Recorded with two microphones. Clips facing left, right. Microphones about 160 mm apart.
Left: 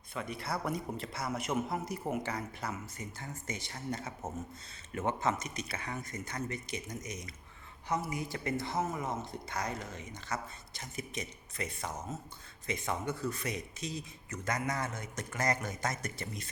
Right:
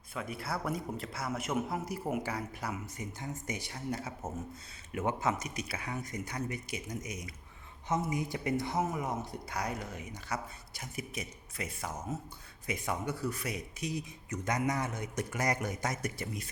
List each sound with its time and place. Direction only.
0.1 s speech: 5° right (ahead or behind)
7.9 s speech: 20° right (ahead or behind)